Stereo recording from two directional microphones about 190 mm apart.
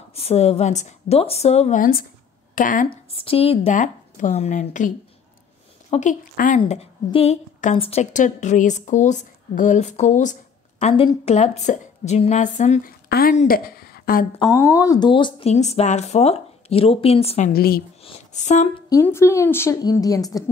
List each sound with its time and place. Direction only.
0.1 s a woman's voice: 30° left (ahead or behind)
2.9 s a woman's voice: 30° left (ahead or behind)
6.6 s a woman's voice: 30° left (ahead or behind); by 14.2 s 50° left (ahead or behind)
14.5 s a woman's voice: 15° left (ahead or behind); by 17.5 s 35° left (ahead or behind)
17.5 s speech: 55° left (ahead or behind)
18.0 s speech: 40° left (ahead or behind)
18.9 s a woman's voice: 15° left (ahead or behind)